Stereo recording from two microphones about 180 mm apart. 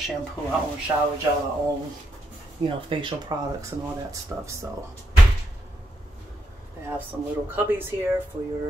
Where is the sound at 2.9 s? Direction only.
25° right (ahead or behind).